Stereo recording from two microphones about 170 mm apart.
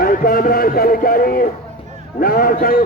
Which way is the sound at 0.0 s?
55° left (ahead or behind).